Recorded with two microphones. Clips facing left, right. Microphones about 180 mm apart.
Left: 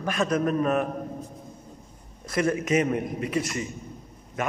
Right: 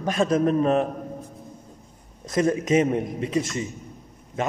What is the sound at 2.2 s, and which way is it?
A man's voice, 20° right (ahead or behind).